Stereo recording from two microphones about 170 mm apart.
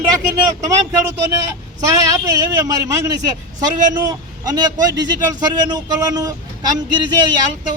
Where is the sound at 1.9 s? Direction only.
20° right (ahead or behind).